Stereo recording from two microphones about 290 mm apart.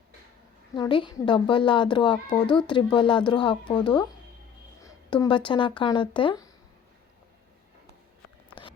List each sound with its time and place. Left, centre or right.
0.8 s a child's voice: centre